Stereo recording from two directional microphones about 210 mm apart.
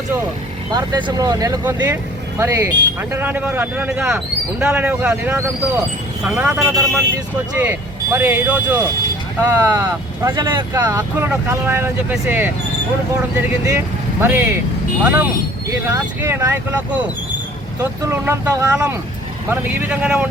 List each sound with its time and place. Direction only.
0.7 s speech: 20° right (ahead or behind)
10.8 s speech: 10° right (ahead or behind)